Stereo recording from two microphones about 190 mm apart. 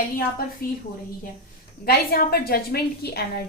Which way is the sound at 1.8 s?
50° left (ahead or behind).